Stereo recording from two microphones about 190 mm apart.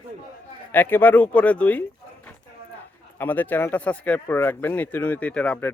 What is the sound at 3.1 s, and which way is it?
Speech, 10° left (ahead or behind).